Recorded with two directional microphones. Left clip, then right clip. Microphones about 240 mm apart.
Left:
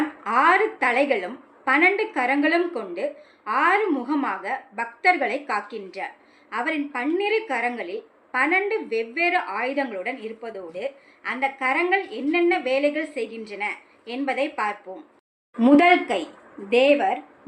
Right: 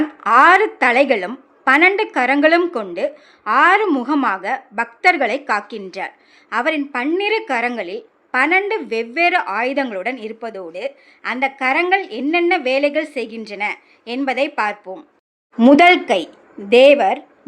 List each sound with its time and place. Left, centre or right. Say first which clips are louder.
0.2 s a woman's voice: right 8 dB; right